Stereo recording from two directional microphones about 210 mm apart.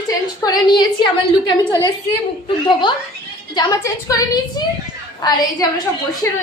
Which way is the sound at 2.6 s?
25° left (ahead or behind).